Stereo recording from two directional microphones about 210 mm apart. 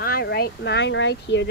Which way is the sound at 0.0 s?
50° left (ahead or behind).